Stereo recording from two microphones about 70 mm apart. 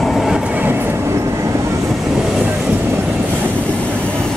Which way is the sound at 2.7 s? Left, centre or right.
Right.